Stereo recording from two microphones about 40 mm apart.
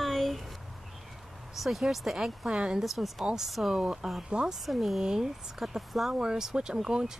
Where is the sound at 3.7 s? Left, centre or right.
Centre.